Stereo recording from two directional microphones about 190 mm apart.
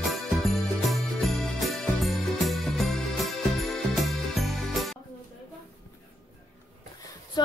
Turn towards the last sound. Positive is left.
turn(degrees=20)  # may be behind; listen again after turning